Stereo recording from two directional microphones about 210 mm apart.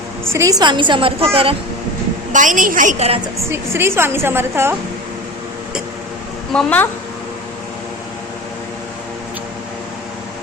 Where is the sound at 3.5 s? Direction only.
10° right (ahead or behind).